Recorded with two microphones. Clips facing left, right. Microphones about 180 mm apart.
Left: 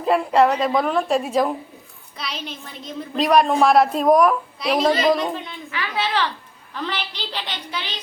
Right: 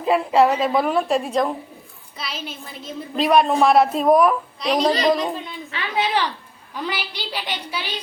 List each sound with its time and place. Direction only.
0.0 s a woman's voice: centre (ahead or behind)
5.7 s a woman's voice: 20° right (ahead or behind)